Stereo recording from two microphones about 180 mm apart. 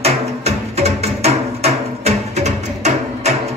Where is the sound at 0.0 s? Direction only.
35° right (ahead or behind).